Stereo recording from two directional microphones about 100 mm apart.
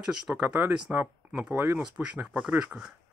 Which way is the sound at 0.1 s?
10° right (ahead or behind).